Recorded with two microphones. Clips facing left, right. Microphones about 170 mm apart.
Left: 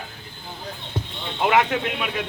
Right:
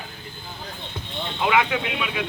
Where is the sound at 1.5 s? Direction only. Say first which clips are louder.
Left 2 dB; 45° left (ahead or behind).